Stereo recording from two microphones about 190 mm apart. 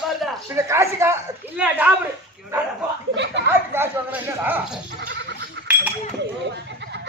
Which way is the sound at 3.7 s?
10° right (ahead or behind).